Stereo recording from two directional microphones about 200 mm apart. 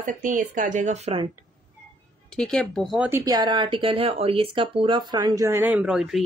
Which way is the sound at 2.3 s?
5° left (ahead or behind).